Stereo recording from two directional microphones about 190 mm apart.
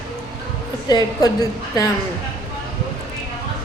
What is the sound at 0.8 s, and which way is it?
A woman's voice, 20° left (ahead or behind).